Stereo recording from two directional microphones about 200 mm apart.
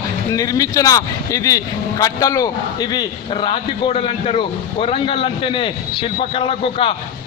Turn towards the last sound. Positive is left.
turn(degrees=25)  # may be behind; listen again after turning